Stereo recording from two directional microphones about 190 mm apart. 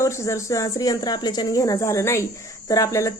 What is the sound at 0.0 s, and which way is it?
Speech, 15° left (ahead or behind).